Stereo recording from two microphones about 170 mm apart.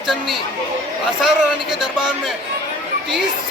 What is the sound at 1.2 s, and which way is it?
Speech, 5° right (ahead or behind).